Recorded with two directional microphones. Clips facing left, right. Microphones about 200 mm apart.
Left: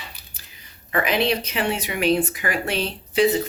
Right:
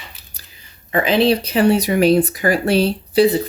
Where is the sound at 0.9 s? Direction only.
30° right (ahead or behind).